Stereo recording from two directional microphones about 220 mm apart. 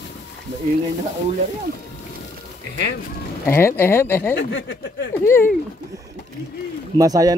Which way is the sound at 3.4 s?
10° left (ahead or behind).